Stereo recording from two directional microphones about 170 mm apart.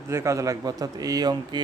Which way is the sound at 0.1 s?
15° right (ahead or behind).